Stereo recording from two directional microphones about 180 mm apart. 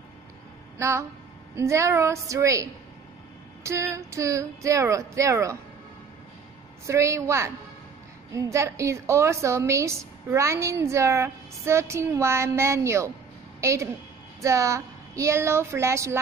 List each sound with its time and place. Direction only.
0.7 s a woman's voice: 15° right (ahead or behind)
6.9 s a woman's voice: 15° right (ahead or behind)